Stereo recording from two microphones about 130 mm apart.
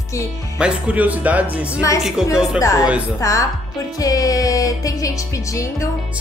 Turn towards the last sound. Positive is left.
turn(degrees=25)  # may be behind; listen again after turning